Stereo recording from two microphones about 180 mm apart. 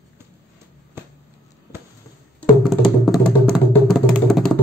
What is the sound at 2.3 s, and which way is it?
Music, 5° left (ahead or behind).